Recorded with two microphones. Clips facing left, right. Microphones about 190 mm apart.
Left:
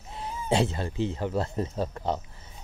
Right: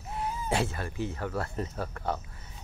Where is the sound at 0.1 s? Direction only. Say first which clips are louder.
Left 3 dB; 25° left (ahead or behind).